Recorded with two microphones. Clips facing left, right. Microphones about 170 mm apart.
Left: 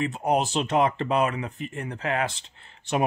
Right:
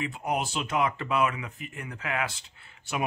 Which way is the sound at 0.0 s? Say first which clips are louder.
Left 6 dB; 40° left (ahead or behind).